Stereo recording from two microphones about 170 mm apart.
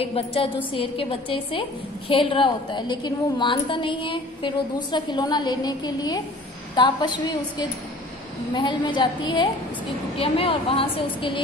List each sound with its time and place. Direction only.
0.0 s a woman's voice: 35° left (ahead or behind)